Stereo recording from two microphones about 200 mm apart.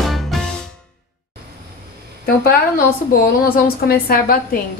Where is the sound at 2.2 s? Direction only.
45° left (ahead or behind).